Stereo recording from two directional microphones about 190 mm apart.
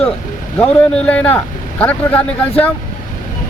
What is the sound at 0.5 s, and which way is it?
Speech, 10° left (ahead or behind).